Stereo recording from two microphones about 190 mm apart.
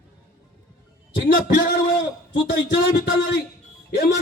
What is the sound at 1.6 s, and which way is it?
A man's voice, 65° left (ahead or behind).